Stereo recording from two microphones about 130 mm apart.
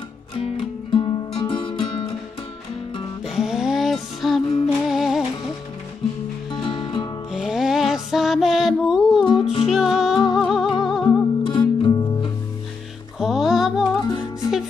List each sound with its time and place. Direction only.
0.4 s music: 45° left (ahead or behind)
3.3 s music: 5° right (ahead or behind)
6.5 s music: centre (ahead or behind)
9.2 s music: 45° left (ahead or behind)
9.7 s music: 5° right (ahead or behind)
11.1 s music: 40° left (ahead or behind)
13.2 s music: 5° right (ahead or behind)
14.0 s music: 30° left (ahead or behind)